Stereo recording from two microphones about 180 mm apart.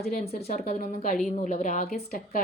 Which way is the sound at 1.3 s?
40° left (ahead or behind).